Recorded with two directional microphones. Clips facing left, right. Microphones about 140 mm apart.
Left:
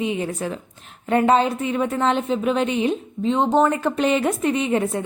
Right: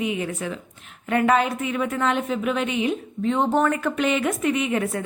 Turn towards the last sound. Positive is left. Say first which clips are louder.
# left 2 dB
turn(degrees=30)  # may be behind; listen again after turning